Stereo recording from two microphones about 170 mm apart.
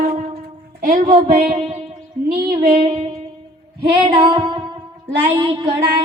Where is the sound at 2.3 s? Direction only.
65° right (ahead or behind).